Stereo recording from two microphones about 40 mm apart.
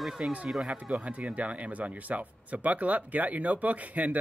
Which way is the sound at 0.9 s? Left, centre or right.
Right.